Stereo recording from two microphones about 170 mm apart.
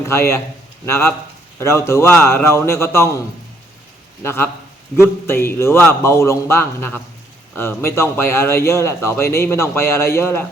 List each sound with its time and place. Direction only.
0.1 s speech: 15° left (ahead or behind)
4.2 s speech: 15° left (ahead or behind)